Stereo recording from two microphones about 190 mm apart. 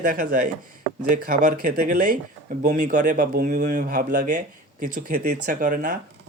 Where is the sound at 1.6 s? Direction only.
45° right (ahead or behind).